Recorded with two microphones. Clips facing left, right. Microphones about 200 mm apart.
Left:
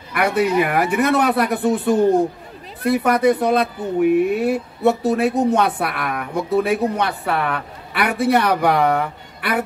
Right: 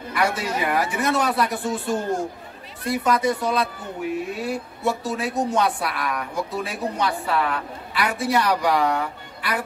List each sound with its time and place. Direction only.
0.1 s speech: 60° left (ahead or behind)